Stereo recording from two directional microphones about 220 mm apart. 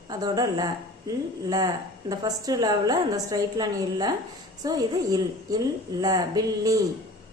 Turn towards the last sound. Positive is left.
turn(degrees=-15)  # may be behind; listen again after turning